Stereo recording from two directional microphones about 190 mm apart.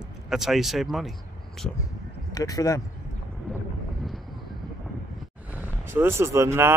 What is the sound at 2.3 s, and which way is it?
Speech, 20° left (ahead or behind).